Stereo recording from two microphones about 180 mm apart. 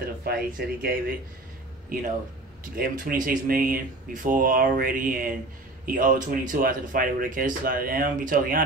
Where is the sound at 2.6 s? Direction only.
50° right (ahead or behind).